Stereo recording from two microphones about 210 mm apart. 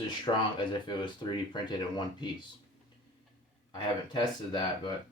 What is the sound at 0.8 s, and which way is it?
Speech, 20° left (ahead or behind).